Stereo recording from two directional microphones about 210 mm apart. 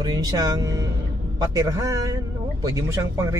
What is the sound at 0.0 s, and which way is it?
Speech, 20° right (ahead or behind).